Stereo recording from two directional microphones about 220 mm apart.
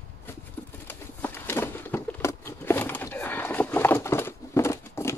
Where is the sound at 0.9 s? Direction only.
10° left (ahead or behind).